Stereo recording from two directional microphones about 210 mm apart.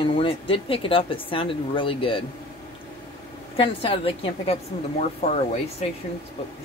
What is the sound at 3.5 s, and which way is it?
Speech, 25° left (ahead or behind).